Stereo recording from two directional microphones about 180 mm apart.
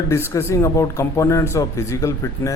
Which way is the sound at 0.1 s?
15° left (ahead or behind).